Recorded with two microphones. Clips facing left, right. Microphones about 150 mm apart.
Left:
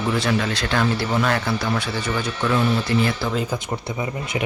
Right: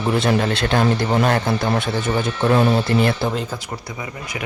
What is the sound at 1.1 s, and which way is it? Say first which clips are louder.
Speech: right 3 dB; 40° right (ahead or behind).